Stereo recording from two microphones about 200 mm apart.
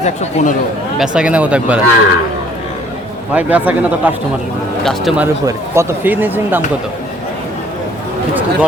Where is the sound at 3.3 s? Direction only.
10° right (ahead or behind).